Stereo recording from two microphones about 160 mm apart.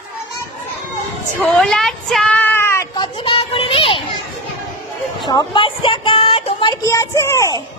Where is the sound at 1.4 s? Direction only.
Centre (ahead or behind).